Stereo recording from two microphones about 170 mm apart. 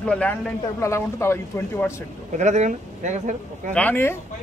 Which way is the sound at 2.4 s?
45° right (ahead or behind).